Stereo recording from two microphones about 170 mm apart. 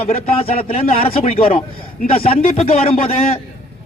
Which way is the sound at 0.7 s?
35° left (ahead or behind).